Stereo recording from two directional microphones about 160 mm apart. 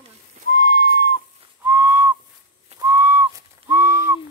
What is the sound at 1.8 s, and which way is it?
Whistle, 15° right (ahead or behind).